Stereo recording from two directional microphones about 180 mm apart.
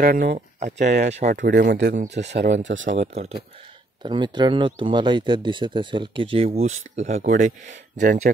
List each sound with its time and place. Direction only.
0.0 s speech: 60° right (ahead or behind)
0.6 s speech: 40° right (ahead or behind)
1.5 s speech: 75° right (ahead or behind); by 2.9 s 90° right
2.9 s speech: 40° right (ahead or behind)
4.0 s speech: 25° right (ahead or behind); by 8.1 s 45° right (ahead or behind)